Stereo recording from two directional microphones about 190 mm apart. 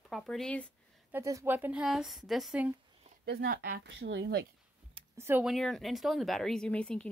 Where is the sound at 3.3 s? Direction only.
55° right (ahead or behind).